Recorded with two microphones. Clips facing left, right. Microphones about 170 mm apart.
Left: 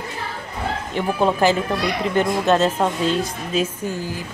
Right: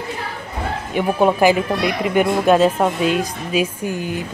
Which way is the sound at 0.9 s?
15° right (ahead or behind).